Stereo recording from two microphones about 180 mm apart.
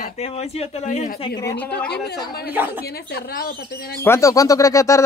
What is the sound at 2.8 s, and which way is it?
Speech, 60° left (ahead or behind).